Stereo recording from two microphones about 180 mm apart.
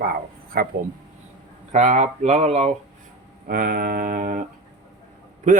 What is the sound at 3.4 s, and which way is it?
Speech, 55° right (ahead or behind).